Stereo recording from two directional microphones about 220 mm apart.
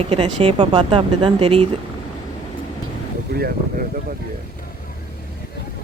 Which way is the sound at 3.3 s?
45° right (ahead or behind).